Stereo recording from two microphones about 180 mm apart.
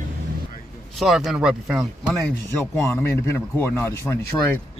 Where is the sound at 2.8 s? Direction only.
15° left (ahead or behind).